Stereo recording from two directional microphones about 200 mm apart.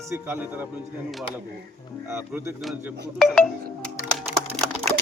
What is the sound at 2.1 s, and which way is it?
Speech, 10° right (ahead or behind).